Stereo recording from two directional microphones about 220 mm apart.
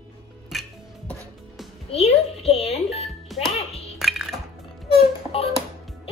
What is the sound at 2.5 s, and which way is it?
Music, 30° left (ahead or behind).